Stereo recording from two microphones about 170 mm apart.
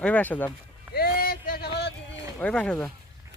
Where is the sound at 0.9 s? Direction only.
60° left (ahead or behind).